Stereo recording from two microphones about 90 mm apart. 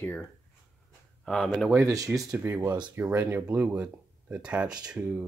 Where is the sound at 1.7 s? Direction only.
35° right (ahead or behind).